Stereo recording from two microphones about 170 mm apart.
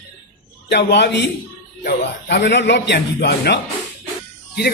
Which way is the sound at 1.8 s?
70° left (ahead or behind).